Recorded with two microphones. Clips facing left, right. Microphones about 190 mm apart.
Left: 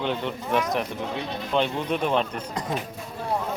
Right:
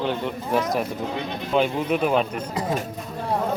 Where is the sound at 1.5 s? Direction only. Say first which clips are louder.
Right 3 dB; 5° right (ahead or behind).